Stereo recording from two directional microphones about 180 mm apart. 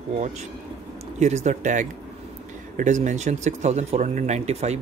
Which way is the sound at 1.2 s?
40° right (ahead or behind).